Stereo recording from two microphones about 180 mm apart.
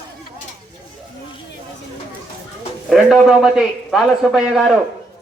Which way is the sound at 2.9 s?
Centre (ahead or behind).